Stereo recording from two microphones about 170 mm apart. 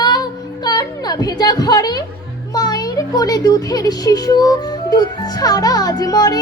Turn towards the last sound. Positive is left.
turn(degrees=20)  # may be behind; listen again after turning